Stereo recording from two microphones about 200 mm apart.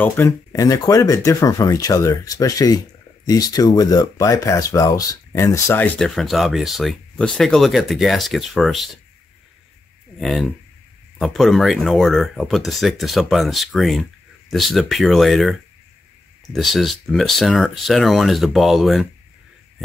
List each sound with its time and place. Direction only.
0.0 s speech: 15° left (ahead or behind)
10.1 s speech: centre (ahead or behind)
16.5 s speech: centre (ahead or behind)